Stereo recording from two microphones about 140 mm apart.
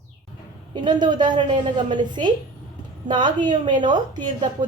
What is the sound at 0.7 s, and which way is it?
A woman's voice, 30° right (ahead or behind).